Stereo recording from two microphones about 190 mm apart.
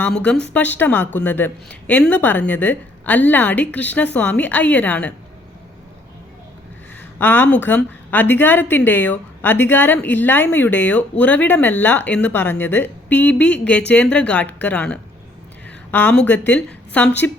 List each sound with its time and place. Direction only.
0.0 s a woman's voice: 5° left (ahead or behind)
7.2 s a woman's voice: 10° left (ahead or behind)